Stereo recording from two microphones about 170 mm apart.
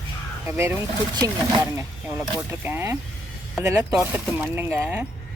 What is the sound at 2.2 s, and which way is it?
Speech, 10° right (ahead or behind).